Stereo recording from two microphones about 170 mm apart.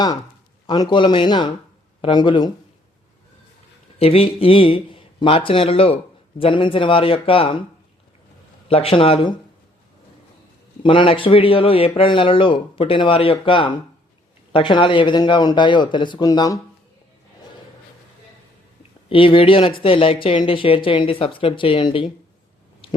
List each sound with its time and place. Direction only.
0.7 s speech: 25° left (ahead or behind)
3.9 s speech: 35° left (ahead or behind)
8.6 s speech: 35° left (ahead or behind)
10.8 s speech: 30° left (ahead or behind)
19.0 s speech: 30° left (ahead or behind)
22.8 s a sound: 30° left (ahead or behind)